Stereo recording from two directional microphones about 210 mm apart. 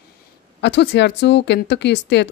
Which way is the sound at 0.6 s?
55° left (ahead or behind).